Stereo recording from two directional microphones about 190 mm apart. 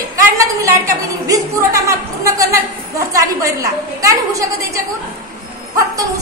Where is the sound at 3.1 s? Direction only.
15° right (ahead or behind).